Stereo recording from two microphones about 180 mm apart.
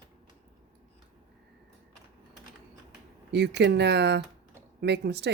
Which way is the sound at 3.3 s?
70° right (ahead or behind).